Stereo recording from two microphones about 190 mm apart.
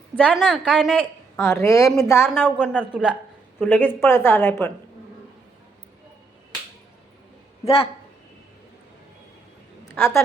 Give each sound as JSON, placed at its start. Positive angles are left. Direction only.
{"t": 0.2, "sound": "a woman's voice", "side_deg": 5}
{"t": 1.4, "sound": "a woman's voice", "side_deg": 15}
{"t": 2.3, "sound": "a woman's voice", "side_deg": -5}
{"t": 3.7, "sound": "a woman's voice", "side_deg": 10}
{"t": 7.6, "sound": "a woman's voice", "side_deg": 30}
{"t": 9.9, "sound": "a woman's voice", "side_deg": 15}